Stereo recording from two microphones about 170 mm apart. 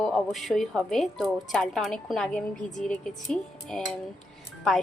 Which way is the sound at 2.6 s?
45° left (ahead or behind).